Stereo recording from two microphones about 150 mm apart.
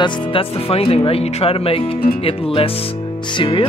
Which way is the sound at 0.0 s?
35° left (ahead or behind).